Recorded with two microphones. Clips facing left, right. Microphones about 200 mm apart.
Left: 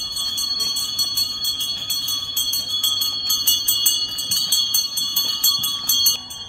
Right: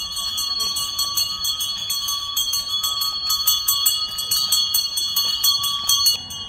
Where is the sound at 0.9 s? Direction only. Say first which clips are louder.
Even; 20° left (ahead or behind).